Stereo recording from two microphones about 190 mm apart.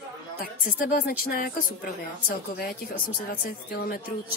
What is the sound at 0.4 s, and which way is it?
A woman's voice, 50° left (ahead or behind).